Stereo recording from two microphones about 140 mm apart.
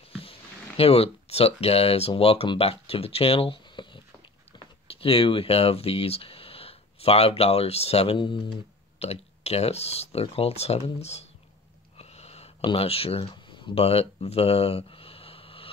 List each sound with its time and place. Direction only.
0.1 s speech: 40° left (ahead or behind)
9.0 s speech: 50° left (ahead or behind)
12.0 s a sound: 50° left (ahead or behind)
12.6 s speech: 45° left (ahead or behind)